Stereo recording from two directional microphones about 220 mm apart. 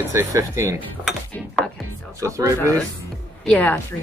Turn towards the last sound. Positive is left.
turn(degrees=5)  # may be behind; listen again after turning